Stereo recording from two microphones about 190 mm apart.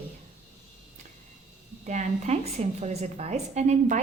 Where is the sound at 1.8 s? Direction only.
35° right (ahead or behind).